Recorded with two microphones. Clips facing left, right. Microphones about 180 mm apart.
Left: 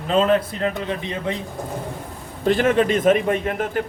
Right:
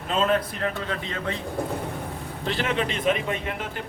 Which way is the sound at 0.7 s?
20° left (ahead or behind).